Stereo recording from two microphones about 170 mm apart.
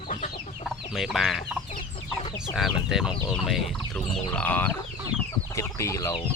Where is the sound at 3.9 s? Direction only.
5° left (ahead or behind).